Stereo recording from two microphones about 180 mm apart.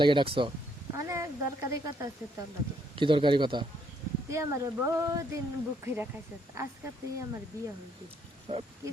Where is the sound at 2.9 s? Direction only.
30° right (ahead or behind).